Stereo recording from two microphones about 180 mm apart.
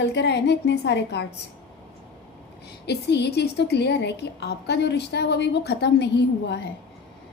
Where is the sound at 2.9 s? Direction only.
70° left (ahead or behind).